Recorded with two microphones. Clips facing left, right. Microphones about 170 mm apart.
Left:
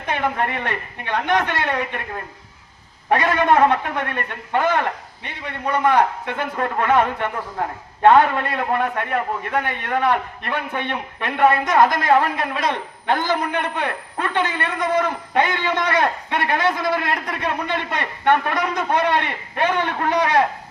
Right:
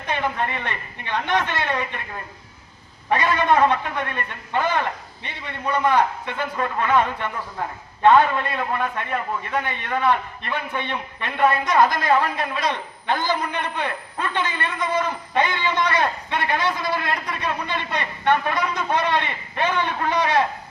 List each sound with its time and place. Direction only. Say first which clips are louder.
0.0 s a woman's voice: left 2 dB; 55° left (ahead or behind)
11.6 s a man's voice: left 2 dB; 55° left (ahead or behind)